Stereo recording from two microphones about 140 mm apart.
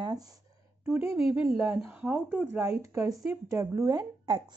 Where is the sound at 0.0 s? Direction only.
25° right (ahead or behind).